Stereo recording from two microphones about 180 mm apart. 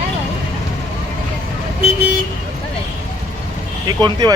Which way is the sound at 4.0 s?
25° right (ahead or behind).